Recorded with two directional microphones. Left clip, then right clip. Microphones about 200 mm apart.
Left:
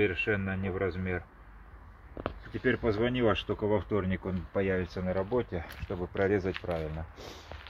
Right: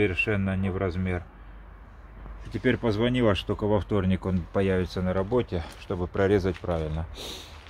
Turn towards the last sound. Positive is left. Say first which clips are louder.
# right 5 dB
turn(degrees=-10)  # may be behind; listen again after turning